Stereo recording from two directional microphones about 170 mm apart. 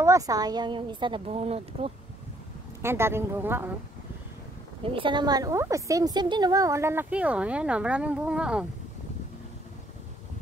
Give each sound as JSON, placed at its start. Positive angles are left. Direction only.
{"t": 0.0, "sound": "a woman's voice", "side_deg": -20}
{"t": 2.8, "sound": "a woman's voice", "side_deg": -15}
{"t": 4.8, "sound": "a woman's voice", "side_deg": -30}